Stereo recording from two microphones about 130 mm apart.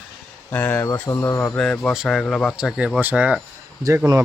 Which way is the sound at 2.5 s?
5° right (ahead or behind).